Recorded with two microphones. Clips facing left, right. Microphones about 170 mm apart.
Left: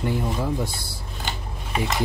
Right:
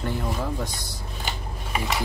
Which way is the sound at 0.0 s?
10° left (ahead or behind).